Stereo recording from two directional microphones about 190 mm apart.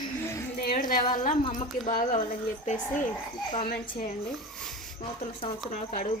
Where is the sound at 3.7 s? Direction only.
50° left (ahead or behind).